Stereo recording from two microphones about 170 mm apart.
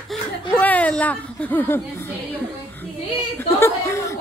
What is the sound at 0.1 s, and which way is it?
Chuckle, 10° left (ahead or behind).